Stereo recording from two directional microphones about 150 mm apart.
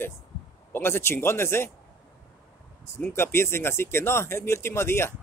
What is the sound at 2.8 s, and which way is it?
Speech, 15° left (ahead or behind).